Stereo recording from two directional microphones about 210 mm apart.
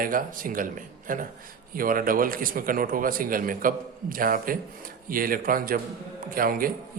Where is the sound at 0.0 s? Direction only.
40° right (ahead or behind).